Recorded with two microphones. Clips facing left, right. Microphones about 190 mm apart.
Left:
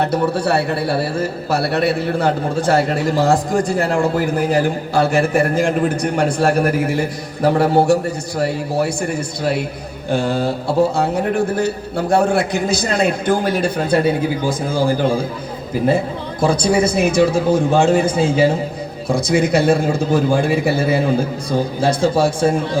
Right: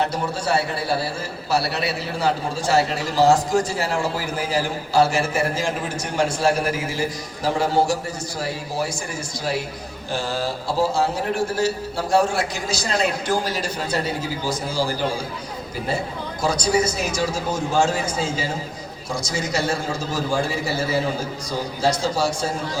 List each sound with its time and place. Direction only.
0.0 s a man's voice: 60° left (ahead or behind)
16.4 s a man's voice: 55° left (ahead or behind)